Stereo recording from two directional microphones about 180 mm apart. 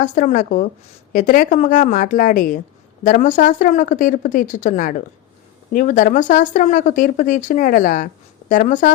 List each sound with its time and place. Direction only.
0.0 s speech: 45° left (ahead or behind)